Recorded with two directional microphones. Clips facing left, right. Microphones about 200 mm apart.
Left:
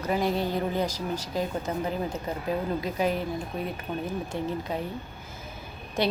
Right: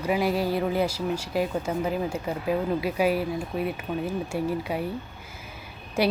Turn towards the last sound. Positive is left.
turn(degrees=-10)  # may be behind; listen again after turning